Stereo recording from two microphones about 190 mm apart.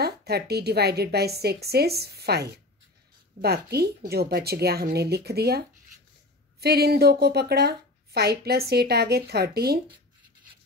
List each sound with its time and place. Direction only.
0.0 s a woman's voice: 55° right (ahead or behind)